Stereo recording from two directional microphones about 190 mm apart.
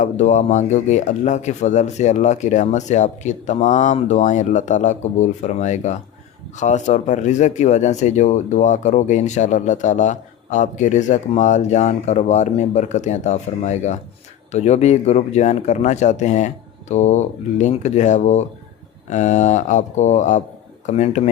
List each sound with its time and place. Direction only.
0.0 s speech: 40° left (ahead or behind)